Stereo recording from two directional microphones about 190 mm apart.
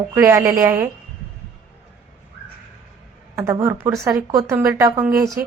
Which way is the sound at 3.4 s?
15° right (ahead or behind).